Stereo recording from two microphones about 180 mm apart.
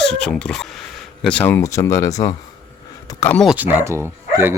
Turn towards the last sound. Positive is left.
turn(degrees=-15)  # may be behind; listen again after turning